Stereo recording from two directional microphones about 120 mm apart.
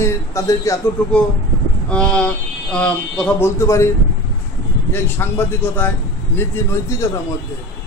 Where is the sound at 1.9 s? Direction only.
10° left (ahead or behind).